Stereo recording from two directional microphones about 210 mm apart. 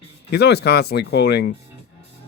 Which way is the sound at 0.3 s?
50° left (ahead or behind).